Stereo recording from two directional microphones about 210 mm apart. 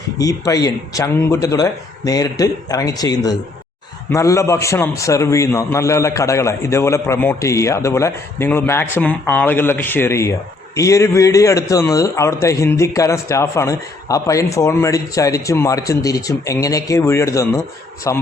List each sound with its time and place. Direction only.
0.2 s a man's voice: 15° left (ahead or behind)